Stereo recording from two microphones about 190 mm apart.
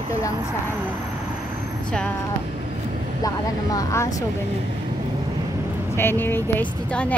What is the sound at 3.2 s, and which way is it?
Speech, 20° left (ahead or behind).